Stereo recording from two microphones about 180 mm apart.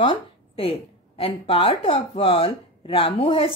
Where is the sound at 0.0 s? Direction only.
30° left (ahead or behind).